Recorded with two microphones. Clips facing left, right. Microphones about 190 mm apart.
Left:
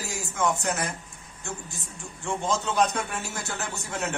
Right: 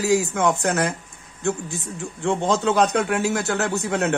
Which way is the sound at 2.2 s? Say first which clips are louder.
Right 7 dB; 65° right (ahead or behind).